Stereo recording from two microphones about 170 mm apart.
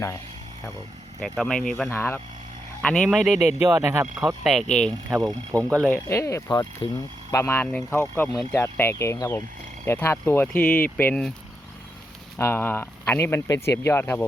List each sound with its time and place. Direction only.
1.2 s speech: 5° left (ahead or behind)
3.6 s speech: 15° right (ahead or behind)
4.4 s speech: centre (ahead or behind)
5.0 s speech: 20° right (ahead or behind)
5.8 s speech: 15° left (ahead or behind)
12.4 s speech: 15° left (ahead or behind)